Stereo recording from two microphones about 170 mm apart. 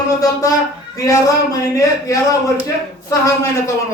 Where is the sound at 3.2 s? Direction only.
20° left (ahead or behind).